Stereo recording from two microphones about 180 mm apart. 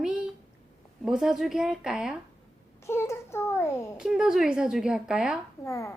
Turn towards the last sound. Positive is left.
turn(degrees=15)  # may be behind; listen again after turning